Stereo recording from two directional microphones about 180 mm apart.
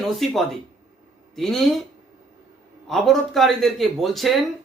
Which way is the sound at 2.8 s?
Centre (ahead or behind).